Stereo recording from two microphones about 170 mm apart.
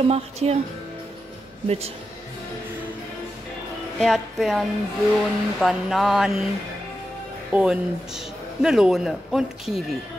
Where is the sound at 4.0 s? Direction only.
Centre (ahead or behind).